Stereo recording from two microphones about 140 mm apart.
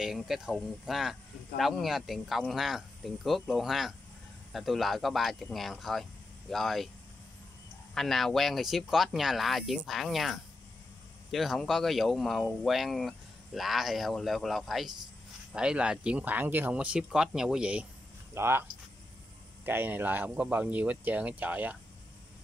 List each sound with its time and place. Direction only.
0.0 s speech: centre (ahead or behind)
7.9 s speech: centre (ahead or behind)